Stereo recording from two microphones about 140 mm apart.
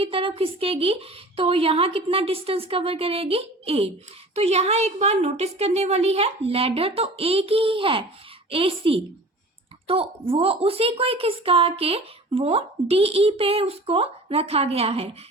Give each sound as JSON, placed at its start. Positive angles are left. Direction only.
{"t": 0.0, "sound": "a woman's voice", "side_deg": -40}